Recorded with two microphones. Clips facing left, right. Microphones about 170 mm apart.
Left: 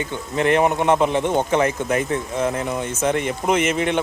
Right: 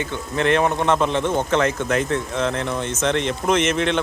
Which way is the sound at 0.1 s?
15° left (ahead or behind).